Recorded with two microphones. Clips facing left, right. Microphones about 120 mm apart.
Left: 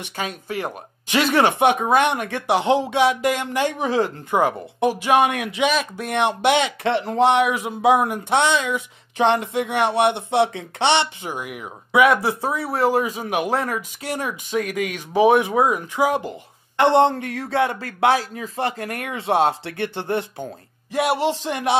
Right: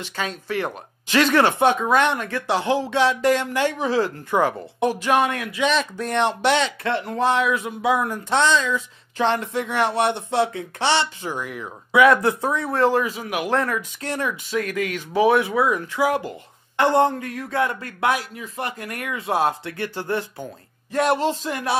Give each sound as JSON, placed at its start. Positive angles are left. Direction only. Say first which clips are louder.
{"t": 0.2, "sound": "speech", "louder": "right 1 dB", "side_deg": 15}
{"t": 5.7, "sound": "speech", "louder": "even", "side_deg": 10}
{"t": 13.2, "sound": "speech", "louder": "left 3 dB", "side_deg": 25}
{"t": 13.5, "sound": "speech", "louder": "right 1 dB", "side_deg": 10}
{"t": 20.9, "sound": "speech", "louder": "even", "side_deg": 10}